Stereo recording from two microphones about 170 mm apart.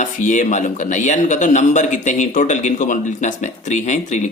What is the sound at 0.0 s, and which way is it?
A man's voice, 45° left (ahead or behind).